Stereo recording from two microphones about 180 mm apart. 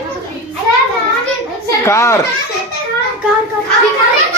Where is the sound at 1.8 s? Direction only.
15° left (ahead or behind).